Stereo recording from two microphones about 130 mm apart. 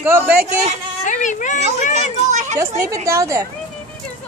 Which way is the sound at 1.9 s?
65° right (ahead or behind).